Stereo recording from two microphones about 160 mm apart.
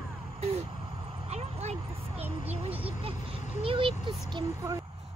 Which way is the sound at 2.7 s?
10° right (ahead or behind).